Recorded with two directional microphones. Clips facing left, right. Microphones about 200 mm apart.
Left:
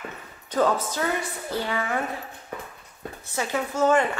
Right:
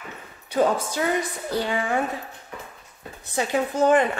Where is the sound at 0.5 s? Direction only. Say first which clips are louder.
Right 1 dB; 10° right (ahead or behind).